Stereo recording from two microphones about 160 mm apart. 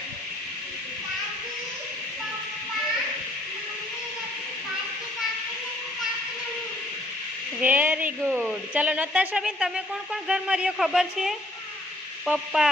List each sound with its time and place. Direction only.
7.6 s speech: 10° right (ahead or behind)